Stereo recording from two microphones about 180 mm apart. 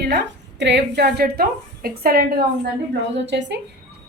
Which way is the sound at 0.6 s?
70° right (ahead or behind).